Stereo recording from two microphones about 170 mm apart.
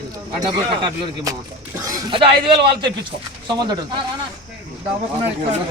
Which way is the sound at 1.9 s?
25° right (ahead or behind).